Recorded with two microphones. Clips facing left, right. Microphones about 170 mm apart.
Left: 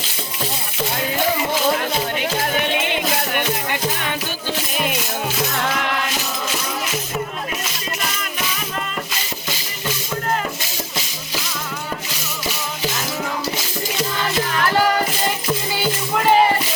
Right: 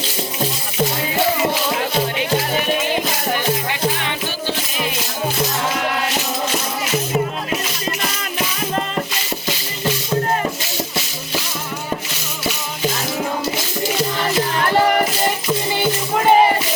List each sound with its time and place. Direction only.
3.3 s music: 50° left (ahead or behind)
14.3 s music: 25° right (ahead or behind)